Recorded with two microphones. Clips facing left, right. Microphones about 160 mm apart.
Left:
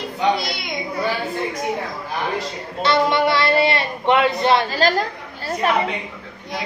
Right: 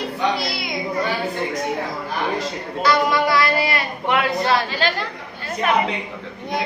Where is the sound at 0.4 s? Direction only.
Centre (ahead or behind).